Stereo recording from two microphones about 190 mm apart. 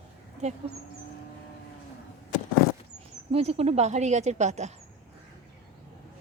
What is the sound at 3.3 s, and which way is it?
Speech, 30° right (ahead or behind).